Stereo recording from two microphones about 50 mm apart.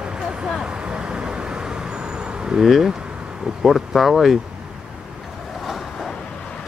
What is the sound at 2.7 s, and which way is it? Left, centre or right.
Speech, centre.